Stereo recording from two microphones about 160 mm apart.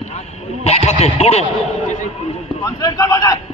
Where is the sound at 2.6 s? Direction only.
20° left (ahead or behind).